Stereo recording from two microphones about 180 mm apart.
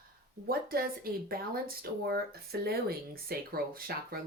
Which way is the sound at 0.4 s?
55° right (ahead or behind).